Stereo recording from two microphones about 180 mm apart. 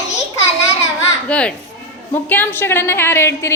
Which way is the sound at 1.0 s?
5° left (ahead or behind).